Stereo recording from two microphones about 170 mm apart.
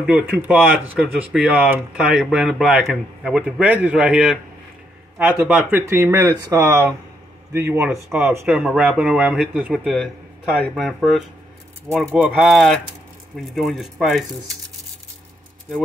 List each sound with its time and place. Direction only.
0.0 s a man's voice: 10° right (ahead or behind)